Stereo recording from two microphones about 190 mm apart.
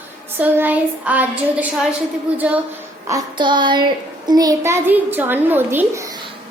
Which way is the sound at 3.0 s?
20° right (ahead or behind).